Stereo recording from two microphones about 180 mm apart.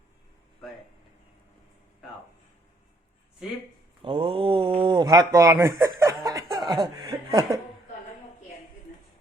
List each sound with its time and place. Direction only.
4.0 s speech: 30° right (ahead or behind)